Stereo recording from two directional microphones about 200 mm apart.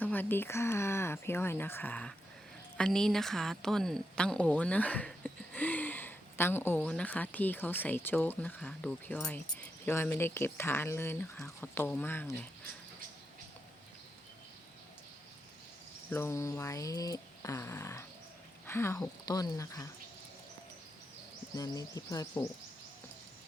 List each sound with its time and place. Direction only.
0.0 s a woman's voice: 10° left (ahead or behind)
16.0 s speech: 10° left (ahead or behind)
21.5 s speech: 20° left (ahead or behind)